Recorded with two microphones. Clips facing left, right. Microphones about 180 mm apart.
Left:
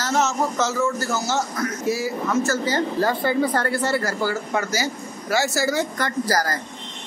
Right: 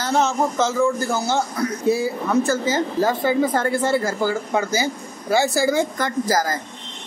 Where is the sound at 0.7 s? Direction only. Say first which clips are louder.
Right 4 dB; 15° right (ahead or behind).